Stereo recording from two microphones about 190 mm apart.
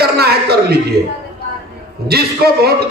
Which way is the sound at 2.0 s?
55° right (ahead or behind).